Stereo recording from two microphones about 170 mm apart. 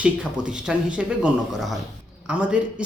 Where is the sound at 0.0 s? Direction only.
5° right (ahead or behind).